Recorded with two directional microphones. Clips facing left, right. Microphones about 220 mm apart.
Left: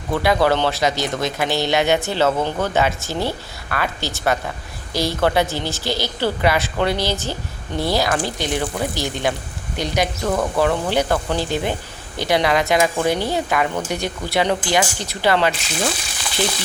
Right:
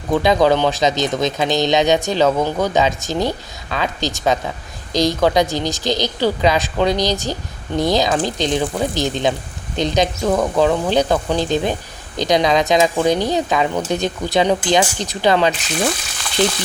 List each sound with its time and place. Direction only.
0.1 s a woman's voice: 20° right (ahead or behind)